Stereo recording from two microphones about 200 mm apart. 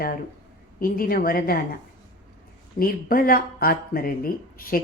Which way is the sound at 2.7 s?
45° left (ahead or behind).